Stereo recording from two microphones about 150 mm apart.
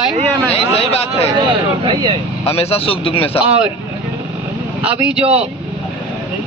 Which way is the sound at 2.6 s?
40° left (ahead or behind).